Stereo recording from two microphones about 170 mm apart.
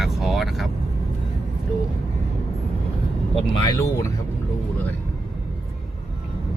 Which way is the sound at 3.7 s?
20° left (ahead or behind).